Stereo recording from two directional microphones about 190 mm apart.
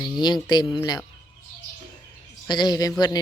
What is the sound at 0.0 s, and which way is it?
Speech, 20° left (ahead or behind).